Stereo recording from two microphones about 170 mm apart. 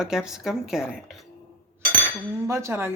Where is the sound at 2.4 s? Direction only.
15° right (ahead or behind).